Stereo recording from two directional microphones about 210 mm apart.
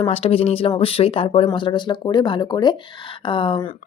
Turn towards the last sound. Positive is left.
turn(degrees=25)  # may be behind; listen again after turning